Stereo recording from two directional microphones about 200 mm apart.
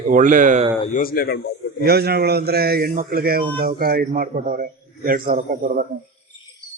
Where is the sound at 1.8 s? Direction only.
50° right (ahead or behind).